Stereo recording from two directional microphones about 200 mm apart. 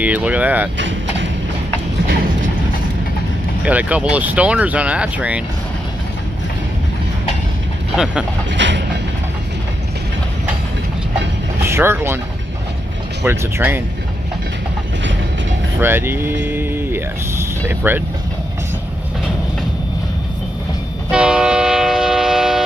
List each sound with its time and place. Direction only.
0.0 s speech: 5° right (ahead or behind)
0.7 s vehicle: 65° right (ahead or behind)
3.6 s speech: 5° right (ahead or behind)
7.9 s speech: 5° right (ahead or behind)
8.5 s train: 60° right (ahead or behind)
11.6 s speech: 10° right (ahead or behind)
13.2 s speech: 10° right (ahead or behind)
15.8 s speech: 10° right (ahead or behind)
16.4 s vehicle: 10° right (ahead or behind)
21.1 s train: 5° right (ahead or behind)